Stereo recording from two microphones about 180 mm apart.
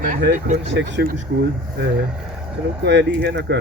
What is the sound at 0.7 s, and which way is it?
Speech, 85° right.